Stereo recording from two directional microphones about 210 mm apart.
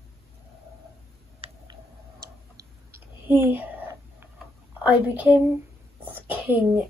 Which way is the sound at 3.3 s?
10° right (ahead or behind).